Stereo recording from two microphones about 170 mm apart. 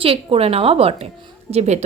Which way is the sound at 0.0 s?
35° right (ahead or behind).